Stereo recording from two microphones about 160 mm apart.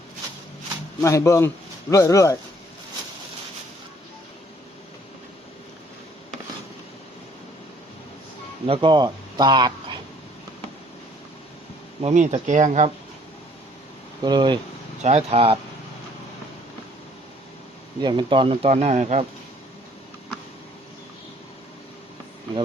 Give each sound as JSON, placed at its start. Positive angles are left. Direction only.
{"t": 1.0, "sound": "speech", "side_deg": 20}
{"t": 8.6, "sound": "speech", "side_deg": -35}
{"t": 12.0, "sound": "speech", "side_deg": -45}
{"t": 14.2, "sound": "speech", "side_deg": -25}
{"t": 15.0, "sound": "speech", "side_deg": -40}
{"t": 18.0, "sound": "speech", "side_deg": -30}